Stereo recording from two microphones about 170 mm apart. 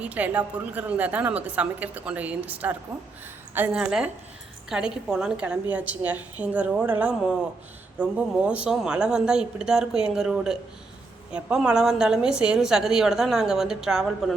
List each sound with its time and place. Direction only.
0.0 s a woman's voice: 10° right (ahead or behind)